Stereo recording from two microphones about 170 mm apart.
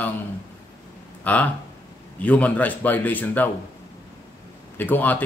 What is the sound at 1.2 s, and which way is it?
Speech, 10° left (ahead or behind).